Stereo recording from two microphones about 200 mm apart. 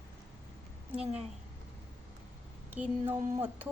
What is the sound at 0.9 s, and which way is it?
Speech, 30° right (ahead or behind).